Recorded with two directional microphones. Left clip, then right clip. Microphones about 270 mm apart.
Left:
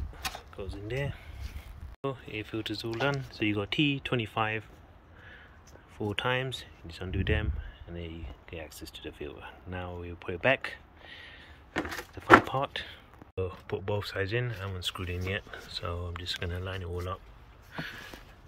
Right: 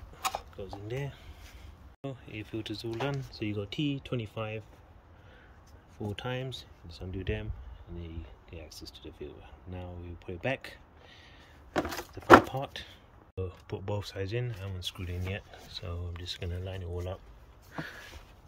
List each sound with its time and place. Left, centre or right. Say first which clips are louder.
0.6 s speech: left 3 dB; centre
6.1 s speech: left 8 dB; centre
8.6 s speech: left 1 dB; centre
8.9 s speech: left 7 dB; centre
11.7 s a sound: right 2 dB; right
12.4 s speech: left 6 dB; centre